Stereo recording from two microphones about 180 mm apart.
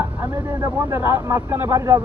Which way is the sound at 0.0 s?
10° right (ahead or behind).